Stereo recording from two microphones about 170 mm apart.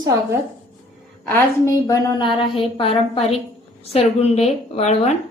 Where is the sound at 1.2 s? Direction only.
15° left (ahead or behind); by 5.1 s 40° left (ahead or behind).